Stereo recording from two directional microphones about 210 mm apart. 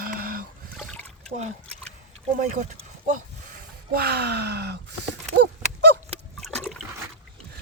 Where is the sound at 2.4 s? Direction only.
35° right (ahead or behind).